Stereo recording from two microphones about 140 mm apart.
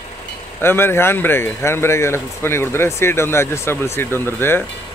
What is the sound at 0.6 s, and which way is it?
Speech, 15° left (ahead or behind).